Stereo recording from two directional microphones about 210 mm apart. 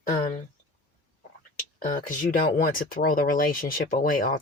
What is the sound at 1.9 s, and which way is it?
Speech, 40° left (ahead or behind).